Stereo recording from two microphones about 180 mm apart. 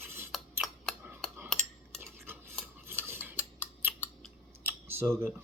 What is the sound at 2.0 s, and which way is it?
Stir, 10° right (ahead or behind).